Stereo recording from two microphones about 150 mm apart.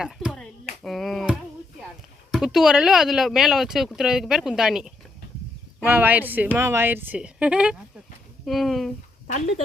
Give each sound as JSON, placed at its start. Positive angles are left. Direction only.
{"t": 0.0, "sound": "a sound", "side_deg": -5}
{"t": 2.3, "sound": "a woman's voice", "side_deg": -5}
{"t": 9.2, "sound": "speech", "side_deg": 55}